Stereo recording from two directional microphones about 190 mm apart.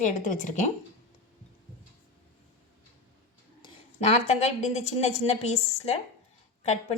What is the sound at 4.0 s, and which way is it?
A woman's voice, 35° left (ahead or behind).